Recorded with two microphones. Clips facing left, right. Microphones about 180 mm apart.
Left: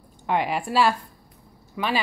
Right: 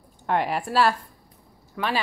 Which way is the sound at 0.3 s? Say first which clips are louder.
Even; centre (ahead or behind).